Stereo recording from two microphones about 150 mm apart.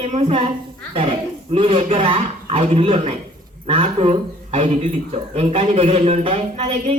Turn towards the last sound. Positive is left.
turn(degrees=-45)  # may be behind; listen again after turning